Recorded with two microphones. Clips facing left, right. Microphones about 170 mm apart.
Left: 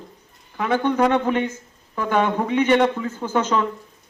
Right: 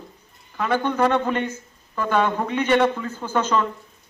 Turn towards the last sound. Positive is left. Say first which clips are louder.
# left 1 dB
turn(degrees=15)  # may be behind; listen again after turning